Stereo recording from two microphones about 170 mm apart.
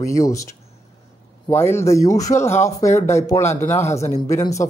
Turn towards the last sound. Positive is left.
turn(degrees=15)  # may be behind; listen again after turning